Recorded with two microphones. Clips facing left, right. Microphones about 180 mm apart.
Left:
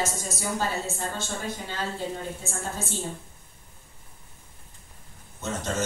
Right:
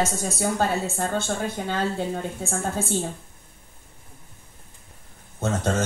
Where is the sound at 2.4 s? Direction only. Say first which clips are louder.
Right 6 dB; 55° right (ahead or behind).